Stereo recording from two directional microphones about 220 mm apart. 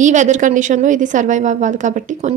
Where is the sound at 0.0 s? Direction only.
35° right (ahead or behind).